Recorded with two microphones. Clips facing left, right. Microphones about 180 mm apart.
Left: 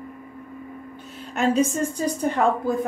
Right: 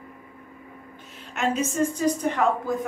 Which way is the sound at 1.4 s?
35° left (ahead or behind).